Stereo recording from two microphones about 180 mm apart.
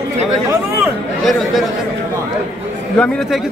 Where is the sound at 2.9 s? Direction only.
5° left (ahead or behind).